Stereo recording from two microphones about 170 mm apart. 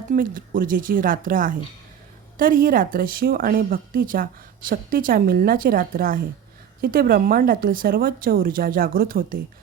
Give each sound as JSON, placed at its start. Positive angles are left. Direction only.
{"t": 0.1, "sound": "a woman's voice", "side_deg": -55}